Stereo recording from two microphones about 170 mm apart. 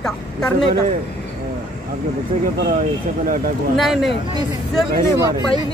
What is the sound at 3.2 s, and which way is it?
Speech, 55° right (ahead or behind).